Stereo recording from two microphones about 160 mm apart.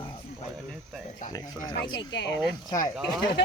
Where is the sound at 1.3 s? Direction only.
25° left (ahead or behind).